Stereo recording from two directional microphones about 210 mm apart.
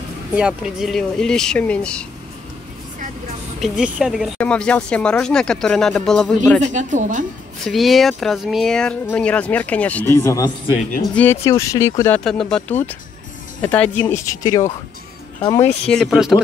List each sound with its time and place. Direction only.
0.4 s speech: 5° right (ahead or behind)
3.6 s speech: 5° right (ahead or behind)
6.6 s a woman's voice: 35° right (ahead or behind)
7.6 s speech: centre (ahead or behind)
15.9 s speech: centre (ahead or behind)